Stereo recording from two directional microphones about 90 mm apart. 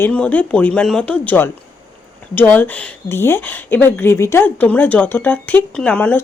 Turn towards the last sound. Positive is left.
turn(degrees=15)  # may be behind; listen again after turning